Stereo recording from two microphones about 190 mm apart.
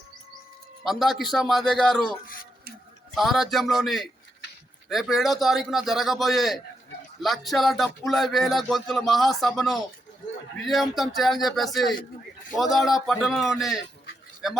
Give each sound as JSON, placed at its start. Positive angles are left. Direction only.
{"t": 0.9, "sound": "speech", "side_deg": 0}
{"t": 2.2, "sound": "speech", "side_deg": 50}
{"t": 3.2, "sound": "speech", "side_deg": 0}